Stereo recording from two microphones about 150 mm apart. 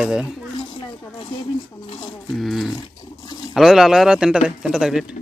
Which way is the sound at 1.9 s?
30° left (ahead or behind).